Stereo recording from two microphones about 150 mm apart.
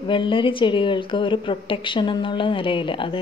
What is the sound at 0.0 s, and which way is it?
Speech, 35° left (ahead or behind).